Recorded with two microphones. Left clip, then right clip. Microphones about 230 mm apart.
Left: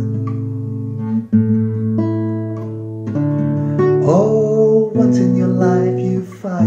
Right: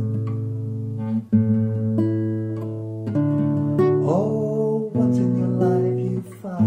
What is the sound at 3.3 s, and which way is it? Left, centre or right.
Guitar, right.